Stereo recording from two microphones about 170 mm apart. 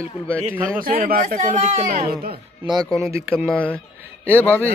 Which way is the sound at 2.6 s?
Centre (ahead or behind).